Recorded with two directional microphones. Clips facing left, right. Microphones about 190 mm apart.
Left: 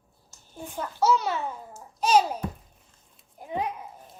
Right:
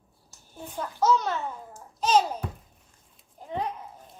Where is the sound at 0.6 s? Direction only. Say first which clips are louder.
Left 1 dB; 10° left (ahead or behind).